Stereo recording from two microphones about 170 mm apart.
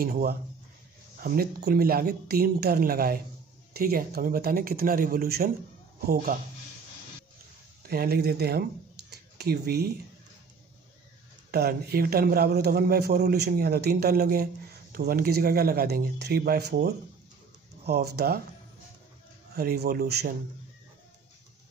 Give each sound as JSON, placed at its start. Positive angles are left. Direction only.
{"t": 0.0, "sound": "speech", "side_deg": -60}
{"t": 7.9, "sound": "speech", "side_deg": -65}
{"t": 9.1, "sound": "a sound", "side_deg": -70}
{"t": 11.5, "sound": "speech", "side_deg": -65}
{"t": 19.5, "sound": "speech", "side_deg": -65}